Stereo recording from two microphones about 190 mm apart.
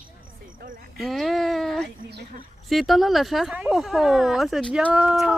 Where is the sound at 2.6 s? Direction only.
Centre (ahead or behind).